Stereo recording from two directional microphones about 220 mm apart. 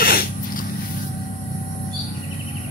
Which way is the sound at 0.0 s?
40° left (ahead or behind).